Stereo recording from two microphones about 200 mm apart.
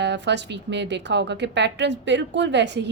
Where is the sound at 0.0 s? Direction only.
60° right (ahead or behind).